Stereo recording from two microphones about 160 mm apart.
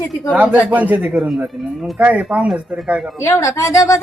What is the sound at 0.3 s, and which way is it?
A man's voice, 10° right (ahead or behind).